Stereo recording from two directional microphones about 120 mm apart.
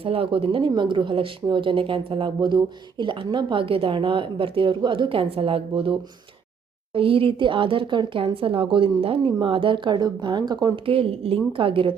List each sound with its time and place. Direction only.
0.0 s speech: 50° right (ahead or behind)
6.9 s speech: 50° right (ahead or behind)
10.8 s speech: 50° right (ahead or behind)